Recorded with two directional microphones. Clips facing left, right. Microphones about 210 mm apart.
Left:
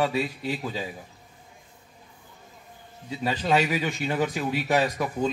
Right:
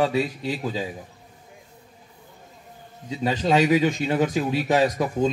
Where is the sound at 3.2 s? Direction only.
20° right (ahead or behind).